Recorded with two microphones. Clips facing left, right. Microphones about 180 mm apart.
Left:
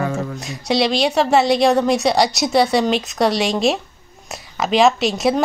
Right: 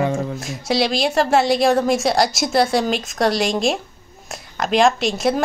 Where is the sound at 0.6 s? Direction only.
Centre (ahead or behind).